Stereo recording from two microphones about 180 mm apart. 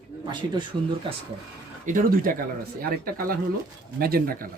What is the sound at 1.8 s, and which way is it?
Speech, 45° right (ahead or behind).